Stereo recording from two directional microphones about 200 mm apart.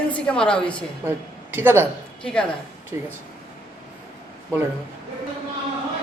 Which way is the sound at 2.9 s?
15° right (ahead or behind).